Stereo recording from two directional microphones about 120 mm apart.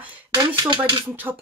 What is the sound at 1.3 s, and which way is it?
Speech, 20° right (ahead or behind).